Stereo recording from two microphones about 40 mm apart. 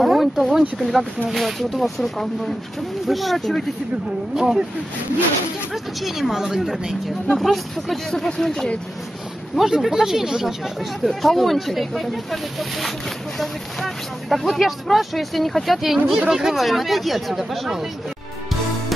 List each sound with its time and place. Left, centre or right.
0.0 s a sound: centre
0.6 s speech: centre
4.4 s speech: centre
6.0 s speech: centre
7.3 s speech: centre
9.6 s speech: centre
11.1 s speech: centre
16.5 s speech: centre